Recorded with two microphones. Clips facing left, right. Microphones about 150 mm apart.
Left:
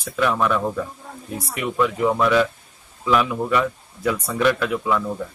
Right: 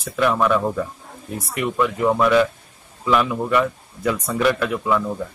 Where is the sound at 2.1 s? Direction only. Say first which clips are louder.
Right 2 dB; 5° right (ahead or behind).